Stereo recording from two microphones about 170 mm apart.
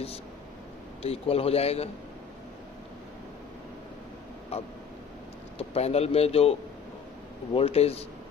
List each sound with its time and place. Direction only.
1.0 s a man's voice: 35° left (ahead or behind)
4.5 s a man's voice: 35° left (ahead or behind)